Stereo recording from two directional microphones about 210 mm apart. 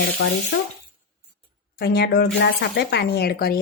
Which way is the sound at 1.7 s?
50° left (ahead or behind).